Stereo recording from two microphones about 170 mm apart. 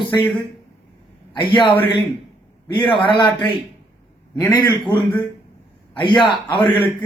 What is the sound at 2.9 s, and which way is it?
Speech, 30° left (ahead or behind).